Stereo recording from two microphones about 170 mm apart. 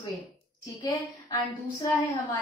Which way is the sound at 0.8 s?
25° left (ahead or behind).